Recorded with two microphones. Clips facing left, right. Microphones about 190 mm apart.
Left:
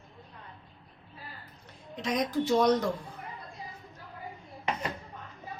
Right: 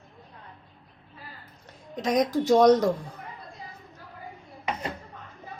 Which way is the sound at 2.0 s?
45° right (ahead or behind).